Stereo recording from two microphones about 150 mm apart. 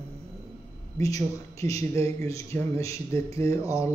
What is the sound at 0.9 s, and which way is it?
A man's voice, 20° left (ahead or behind).